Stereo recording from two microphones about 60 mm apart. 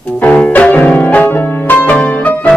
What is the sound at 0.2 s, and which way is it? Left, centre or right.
Music, left.